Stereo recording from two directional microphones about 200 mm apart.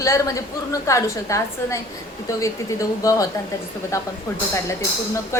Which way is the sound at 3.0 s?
15° left (ahead or behind).